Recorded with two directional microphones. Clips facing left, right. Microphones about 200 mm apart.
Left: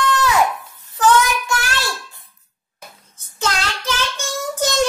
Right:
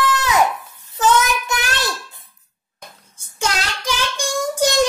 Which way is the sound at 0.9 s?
20° right (ahead or behind).